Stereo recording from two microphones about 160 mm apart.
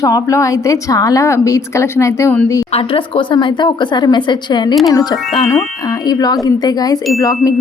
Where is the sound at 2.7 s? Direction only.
35° left (ahead or behind).